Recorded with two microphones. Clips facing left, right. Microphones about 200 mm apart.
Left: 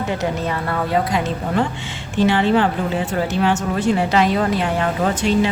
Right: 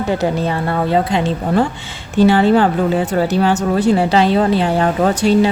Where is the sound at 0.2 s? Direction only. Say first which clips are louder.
Right 5 dB; 30° right (ahead or behind).